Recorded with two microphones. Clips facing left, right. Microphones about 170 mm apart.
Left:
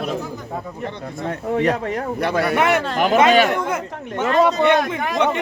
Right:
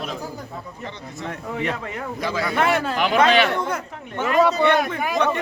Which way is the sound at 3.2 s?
45° left (ahead or behind).